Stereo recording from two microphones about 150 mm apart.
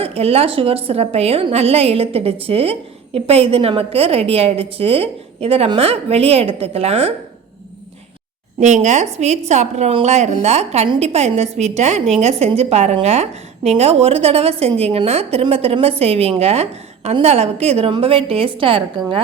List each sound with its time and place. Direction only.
0.0 s a woman's voice: 40° right (ahead or behind)
8.6 s a woman's voice: 55° right (ahead or behind); by 19.0 s 35° right (ahead or behind)